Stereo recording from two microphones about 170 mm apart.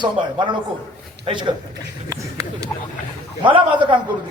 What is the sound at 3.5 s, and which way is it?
Speech, 30° right (ahead or behind).